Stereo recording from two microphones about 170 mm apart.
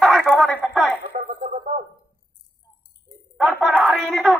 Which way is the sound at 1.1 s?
50° right (ahead or behind).